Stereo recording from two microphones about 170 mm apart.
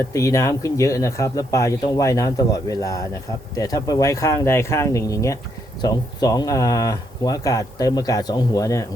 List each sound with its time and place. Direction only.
0.0 s speech: 20° left (ahead or behind)